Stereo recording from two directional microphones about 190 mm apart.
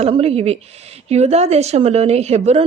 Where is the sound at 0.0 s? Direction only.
30° right (ahead or behind).